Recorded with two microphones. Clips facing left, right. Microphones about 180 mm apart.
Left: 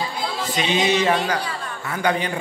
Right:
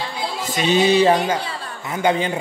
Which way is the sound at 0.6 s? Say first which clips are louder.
Right 5 dB; 35° right (ahead or behind).